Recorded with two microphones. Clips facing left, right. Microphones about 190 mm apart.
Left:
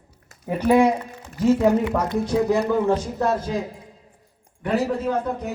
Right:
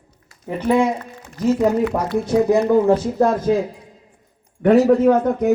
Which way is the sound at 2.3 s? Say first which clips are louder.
Right 6 dB; 20° right (ahead or behind).